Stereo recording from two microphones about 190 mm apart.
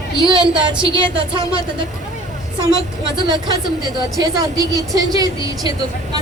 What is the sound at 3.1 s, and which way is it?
A woman's voice, 25° right (ahead or behind).